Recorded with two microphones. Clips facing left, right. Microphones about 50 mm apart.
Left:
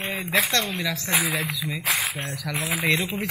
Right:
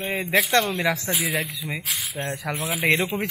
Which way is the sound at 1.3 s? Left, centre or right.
Left.